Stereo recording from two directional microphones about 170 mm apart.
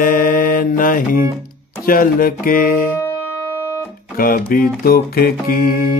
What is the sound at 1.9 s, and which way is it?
Music, 55° left (ahead or behind).